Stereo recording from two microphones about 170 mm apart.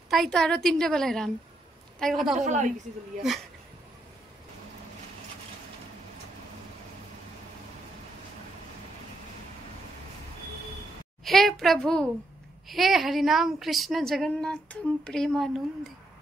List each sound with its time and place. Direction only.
0.1 s a woman's voice: centre (ahead or behind)
2.4 s a woman's voice: 45° right (ahead or behind)
11.2 s a woman's voice: centre (ahead or behind)